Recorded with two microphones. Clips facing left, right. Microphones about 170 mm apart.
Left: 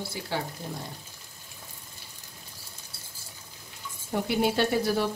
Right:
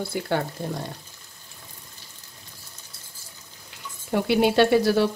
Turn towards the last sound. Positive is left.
turn(degrees=-80)